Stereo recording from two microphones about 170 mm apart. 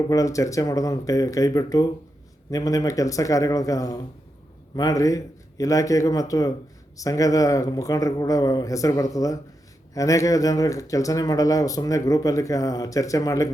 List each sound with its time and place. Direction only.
0.1 s speech: 20° left (ahead or behind)